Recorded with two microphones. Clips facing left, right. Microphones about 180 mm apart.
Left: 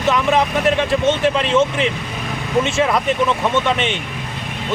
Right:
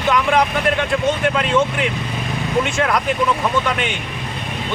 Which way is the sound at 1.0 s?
25° left (ahead or behind).